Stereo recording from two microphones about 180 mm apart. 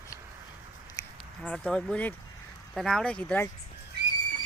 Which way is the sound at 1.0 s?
20° left (ahead or behind).